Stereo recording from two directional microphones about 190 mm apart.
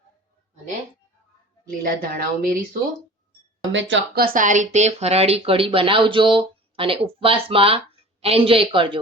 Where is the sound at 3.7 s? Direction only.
75° right (ahead or behind).